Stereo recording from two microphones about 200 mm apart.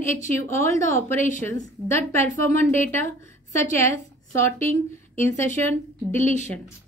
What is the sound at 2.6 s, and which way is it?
Speech, 10° left (ahead or behind).